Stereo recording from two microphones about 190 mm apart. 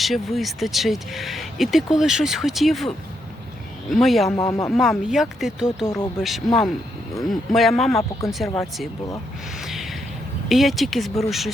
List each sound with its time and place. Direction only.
0.0 s speech: centre (ahead or behind)
4.3 s speech: 15° left (ahead or behind)
4.7 s speech: centre (ahead or behind)
9.6 s a sound: centre (ahead or behind)
10.5 s speech: centre (ahead or behind)